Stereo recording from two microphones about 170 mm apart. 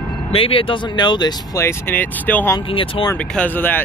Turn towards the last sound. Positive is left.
turn(degrees=10)  # may be behind; listen again after turning